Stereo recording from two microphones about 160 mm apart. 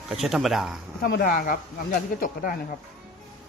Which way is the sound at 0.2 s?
Centre (ahead or behind).